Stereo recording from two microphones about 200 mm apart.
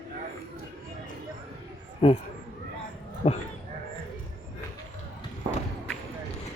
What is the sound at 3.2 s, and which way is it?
Speech, 35° left (ahead or behind).